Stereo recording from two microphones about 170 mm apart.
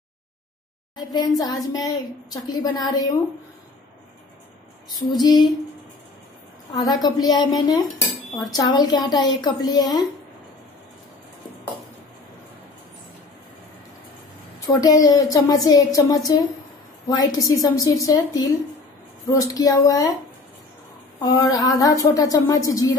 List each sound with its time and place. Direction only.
0.9 s a woman's voice: 25° left (ahead or behind)
4.9 s a woman's voice: 25° left (ahead or behind)
7.0 s a woman's voice: 25° left (ahead or behind)
14.8 s a woman's voice: 20° left (ahead or behind)
21.2 s a woman's voice: 20° left (ahead or behind)